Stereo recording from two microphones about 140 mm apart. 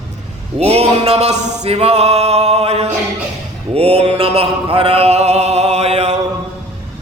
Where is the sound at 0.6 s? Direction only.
45° right (ahead or behind).